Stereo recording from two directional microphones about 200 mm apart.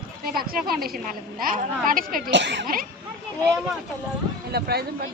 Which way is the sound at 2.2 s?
60° right (ahead or behind).